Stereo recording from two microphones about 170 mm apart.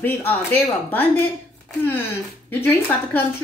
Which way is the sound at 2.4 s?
10° left (ahead or behind).